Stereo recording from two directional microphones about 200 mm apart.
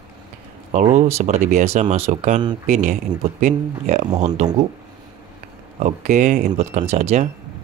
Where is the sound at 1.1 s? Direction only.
35° right (ahead or behind).